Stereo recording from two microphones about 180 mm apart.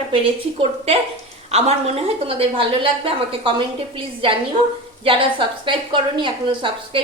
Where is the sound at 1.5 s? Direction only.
35° right (ahead or behind).